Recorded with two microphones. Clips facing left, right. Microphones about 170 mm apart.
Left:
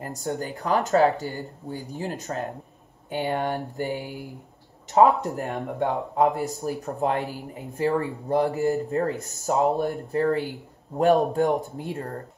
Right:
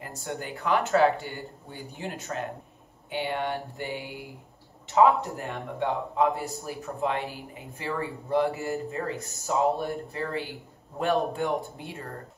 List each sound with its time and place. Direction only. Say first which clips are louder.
0.2 s speech: left 3 dB; 40° left (ahead or behind)
5.4 s speech: left 4 dB; 40° left (ahead or behind)